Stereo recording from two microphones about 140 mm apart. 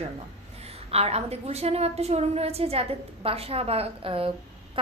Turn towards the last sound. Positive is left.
turn(degrees=-40)  # may be behind; listen again after turning